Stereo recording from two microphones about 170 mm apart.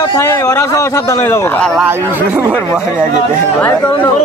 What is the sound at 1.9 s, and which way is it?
Speech, 10° right (ahead or behind).